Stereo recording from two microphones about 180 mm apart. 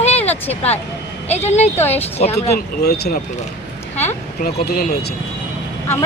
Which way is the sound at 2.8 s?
65° left (ahead or behind).